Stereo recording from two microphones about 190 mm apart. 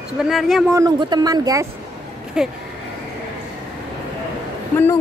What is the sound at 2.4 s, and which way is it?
Speech, 5° right (ahead or behind).